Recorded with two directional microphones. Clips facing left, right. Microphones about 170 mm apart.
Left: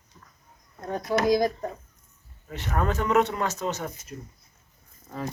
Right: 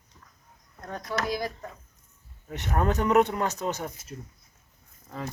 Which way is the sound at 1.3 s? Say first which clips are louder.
Left 8 dB; 40° left (ahead or behind).